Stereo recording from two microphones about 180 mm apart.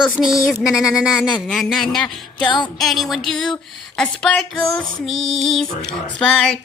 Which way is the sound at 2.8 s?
Centre (ahead or behind).